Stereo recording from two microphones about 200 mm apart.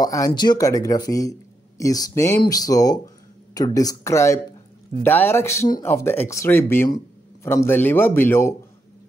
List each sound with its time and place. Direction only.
0.0 s speech: 20° left (ahead or behind)